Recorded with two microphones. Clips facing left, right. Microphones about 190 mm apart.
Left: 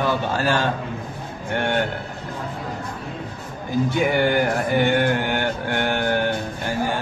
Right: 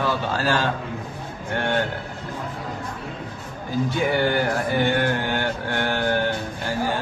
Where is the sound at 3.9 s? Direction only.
15° left (ahead or behind).